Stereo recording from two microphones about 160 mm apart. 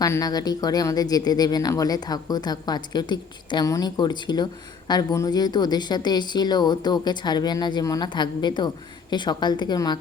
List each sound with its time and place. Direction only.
0.0 s a woman's voice: 20° left (ahead or behind)